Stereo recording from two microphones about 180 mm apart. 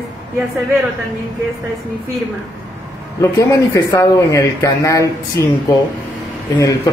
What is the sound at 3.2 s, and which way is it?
A man's voice, 15° left (ahead or behind).